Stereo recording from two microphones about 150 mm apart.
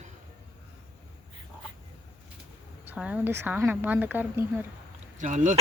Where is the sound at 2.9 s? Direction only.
10° right (ahead or behind).